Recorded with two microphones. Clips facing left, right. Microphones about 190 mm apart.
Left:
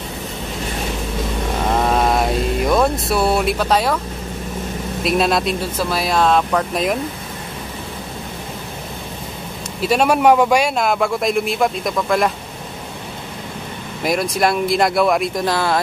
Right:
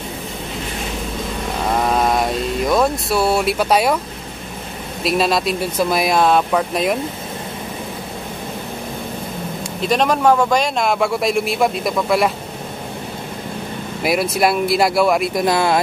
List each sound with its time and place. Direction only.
1.7 s mantra: centre (ahead or behind)
3.5 s speech: 10° right (ahead or behind)
5.0 s a man's voice: centre (ahead or behind)
5.9 s speech: 15° right (ahead or behind)
9.8 s a man's voice: 5° left (ahead or behind)
14.0 s a man's voice: 5° right (ahead or behind)
15.4 s speech: 15° right (ahead or behind)